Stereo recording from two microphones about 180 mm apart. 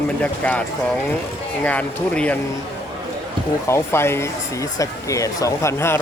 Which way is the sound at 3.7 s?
15° left (ahead or behind).